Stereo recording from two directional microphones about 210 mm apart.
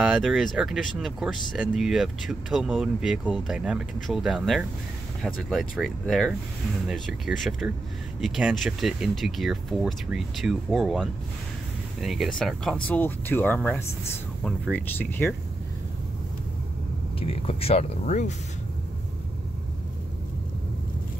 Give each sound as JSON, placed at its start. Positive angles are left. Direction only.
{"t": 0.0, "sound": "speech", "side_deg": 0}
{"t": 17.2, "sound": "speech", "side_deg": 25}